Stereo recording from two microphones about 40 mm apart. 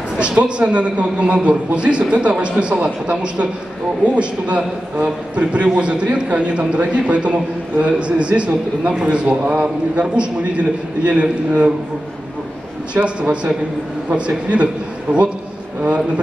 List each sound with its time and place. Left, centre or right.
0.4 s a man's voice: right
12.9 s a man's voice: right